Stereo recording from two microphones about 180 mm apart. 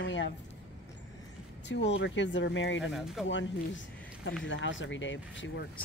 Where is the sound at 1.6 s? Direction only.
80° left.